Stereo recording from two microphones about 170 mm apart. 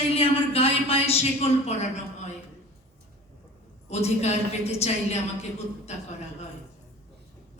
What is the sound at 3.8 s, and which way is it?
A woman's voice, 40° left (ahead or behind).